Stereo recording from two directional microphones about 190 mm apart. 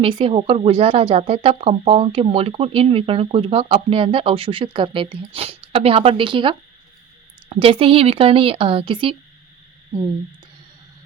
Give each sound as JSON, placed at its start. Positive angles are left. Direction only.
{"t": 0.0, "sound": "speech", "side_deg": -25}